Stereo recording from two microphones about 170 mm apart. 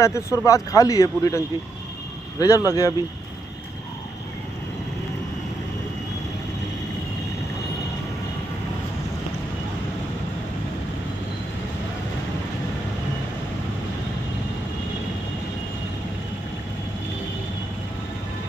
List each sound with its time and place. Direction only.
0.0 s speech: 15° left (ahead or behind)